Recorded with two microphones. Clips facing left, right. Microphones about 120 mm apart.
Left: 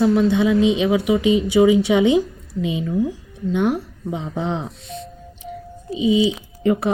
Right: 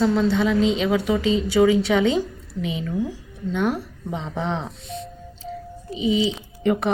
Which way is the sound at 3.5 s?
15° left (ahead or behind).